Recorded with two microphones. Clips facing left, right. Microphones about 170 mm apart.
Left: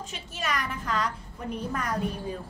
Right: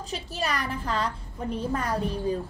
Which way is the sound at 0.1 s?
35° right (ahead or behind).